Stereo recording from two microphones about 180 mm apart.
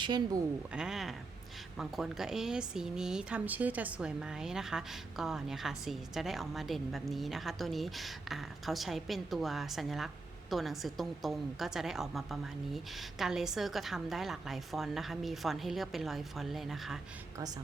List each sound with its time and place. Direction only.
0.0 s a woman's voice: 20° right (ahead or behind)
0.7 s speech: 5° right (ahead or behind)